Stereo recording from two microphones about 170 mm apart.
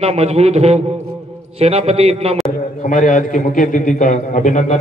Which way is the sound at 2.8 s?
50° left (ahead or behind).